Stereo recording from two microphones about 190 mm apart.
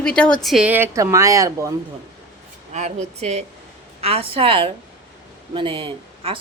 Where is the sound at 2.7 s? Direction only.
35° right (ahead or behind).